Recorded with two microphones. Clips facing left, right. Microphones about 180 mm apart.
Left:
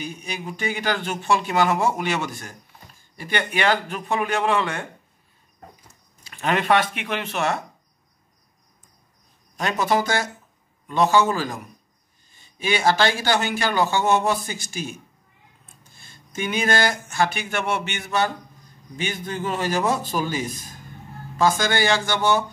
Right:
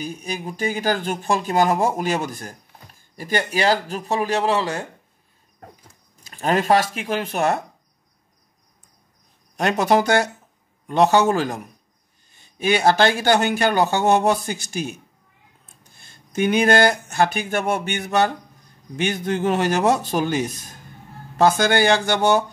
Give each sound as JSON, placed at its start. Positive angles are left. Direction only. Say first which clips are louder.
{"t": 0.0, "sound": "speech", "louder": "right 3 dB", "side_deg": -45}
{"t": 5.6, "sound": "dog", "louder": "right 2 dB", "side_deg": -55}
{"t": 6.3, "sound": "speech", "louder": "right 2 dB", "side_deg": -40}
{"t": 9.6, "sound": "speech", "louder": "right 4 dB", "side_deg": -60}
{"t": 16.0, "sound": "speech", "louder": "right 8 dB", "side_deg": -55}